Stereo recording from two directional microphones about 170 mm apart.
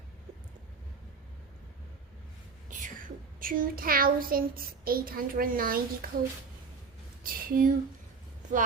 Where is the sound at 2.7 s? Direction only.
50° right (ahead or behind).